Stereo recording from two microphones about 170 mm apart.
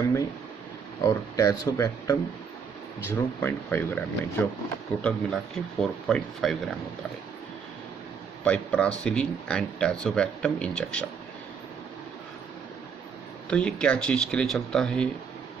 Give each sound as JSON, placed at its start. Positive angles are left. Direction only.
{"t": 1.0, "sound": "speech", "side_deg": 20}
{"t": 8.5, "sound": "speech", "side_deg": 5}
{"t": 13.5, "sound": "speech", "side_deg": 5}